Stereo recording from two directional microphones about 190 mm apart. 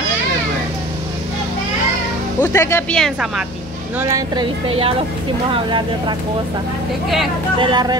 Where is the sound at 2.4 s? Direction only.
15° left (ahead or behind); by 3.4 s centre (ahead or behind).